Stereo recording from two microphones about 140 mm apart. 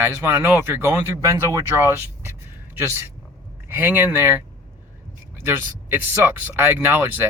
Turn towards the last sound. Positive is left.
turn(degrees=-15)  # may be behind; listen again after turning